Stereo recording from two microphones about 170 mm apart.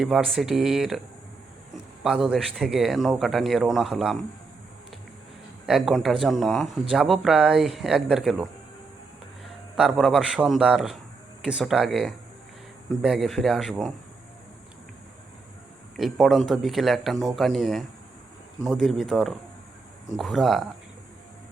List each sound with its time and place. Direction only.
0.0 s speech: centre (ahead or behind)
2.0 s speech: 5° right (ahead or behind)
5.6 s speech: centre (ahead or behind)
9.7 s speech: 5° right (ahead or behind)
16.0 s speech: centre (ahead or behind)